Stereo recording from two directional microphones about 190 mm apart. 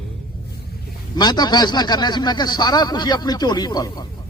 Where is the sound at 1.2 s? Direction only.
20° left (ahead or behind).